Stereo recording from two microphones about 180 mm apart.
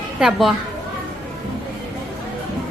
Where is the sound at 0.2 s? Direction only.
5° right (ahead or behind).